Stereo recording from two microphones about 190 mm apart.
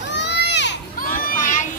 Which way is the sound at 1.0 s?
45° left (ahead or behind).